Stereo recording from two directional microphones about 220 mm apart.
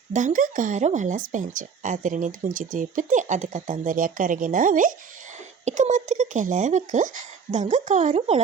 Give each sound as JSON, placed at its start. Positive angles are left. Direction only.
{"t": 0.1, "sound": "speech", "side_deg": -35}